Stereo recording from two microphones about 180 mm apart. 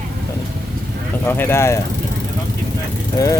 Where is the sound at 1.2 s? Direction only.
10° left (ahead or behind).